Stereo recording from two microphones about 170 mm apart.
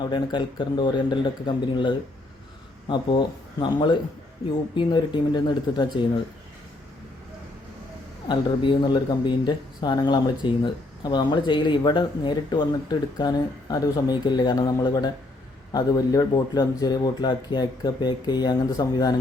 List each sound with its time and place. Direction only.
0.0 s speech: 25° left (ahead or behind)
3.6 s speech: 25° left (ahead or behind)
8.3 s speech: 25° left (ahead or behind)